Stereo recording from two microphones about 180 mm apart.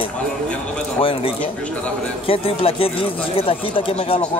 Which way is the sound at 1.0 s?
30° left (ahead or behind).